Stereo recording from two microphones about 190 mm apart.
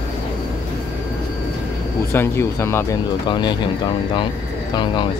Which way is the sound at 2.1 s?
10° left (ahead or behind).